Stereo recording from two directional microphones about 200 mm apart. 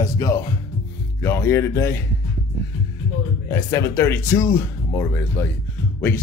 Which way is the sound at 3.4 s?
15° left (ahead or behind).